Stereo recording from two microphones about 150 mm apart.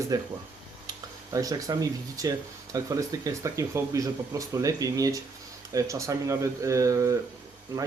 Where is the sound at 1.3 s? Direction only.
25° right (ahead or behind).